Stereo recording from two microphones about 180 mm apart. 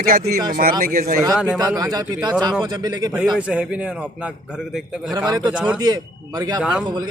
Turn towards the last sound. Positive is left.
turn(degrees=-25)  # may be behind; listen again after turning